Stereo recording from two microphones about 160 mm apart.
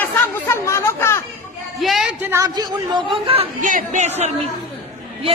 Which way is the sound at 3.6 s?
55° right (ahead or behind).